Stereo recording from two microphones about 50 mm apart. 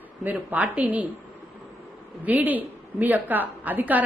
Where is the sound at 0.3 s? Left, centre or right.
Right.